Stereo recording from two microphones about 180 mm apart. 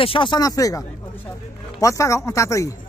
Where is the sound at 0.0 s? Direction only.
30° left (ahead or behind).